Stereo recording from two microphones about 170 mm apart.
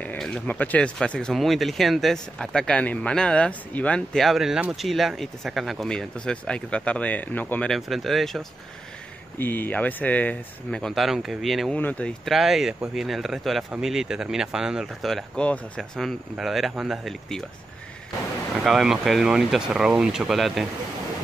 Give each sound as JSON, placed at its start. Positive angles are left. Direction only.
{"t": 0.0, "sound": "speech", "side_deg": 5}
{"t": 9.4, "sound": "speech", "side_deg": 10}
{"t": 18.6, "sound": "speech", "side_deg": 0}